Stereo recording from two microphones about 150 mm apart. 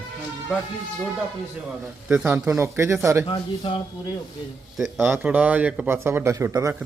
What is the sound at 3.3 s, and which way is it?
Speech, 35° left (ahead or behind).